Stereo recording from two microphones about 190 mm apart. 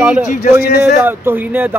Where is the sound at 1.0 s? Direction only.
10° right (ahead or behind).